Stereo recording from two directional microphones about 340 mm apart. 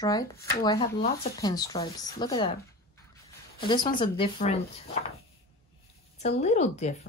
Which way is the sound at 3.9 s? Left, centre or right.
Centre.